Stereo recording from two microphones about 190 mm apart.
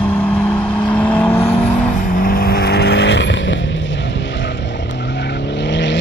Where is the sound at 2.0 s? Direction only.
45° left (ahead or behind).